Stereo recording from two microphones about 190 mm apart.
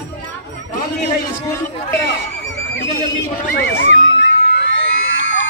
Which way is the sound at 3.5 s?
75° left (ahead or behind).